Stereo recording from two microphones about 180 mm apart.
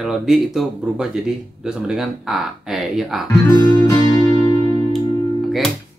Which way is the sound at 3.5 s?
20° left (ahead or behind).